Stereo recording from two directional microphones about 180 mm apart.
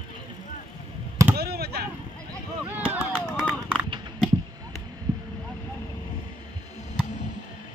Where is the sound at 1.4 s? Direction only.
60° right (ahead or behind).